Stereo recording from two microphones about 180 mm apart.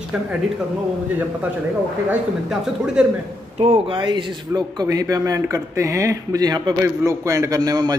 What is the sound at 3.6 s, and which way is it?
A man's voice, 30° right (ahead or behind).